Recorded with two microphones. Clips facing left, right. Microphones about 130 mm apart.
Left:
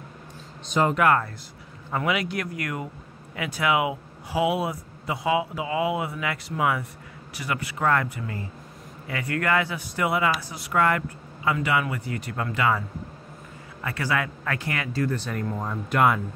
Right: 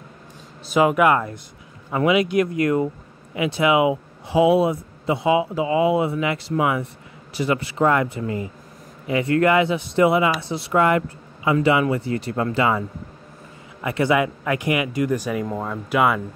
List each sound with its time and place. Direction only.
0.7 s a man's voice: 10° right (ahead or behind)
11.5 s a man's voice: 30° right (ahead or behind)
13.8 s speech: 20° right (ahead or behind); by 16.2 s centre (ahead or behind)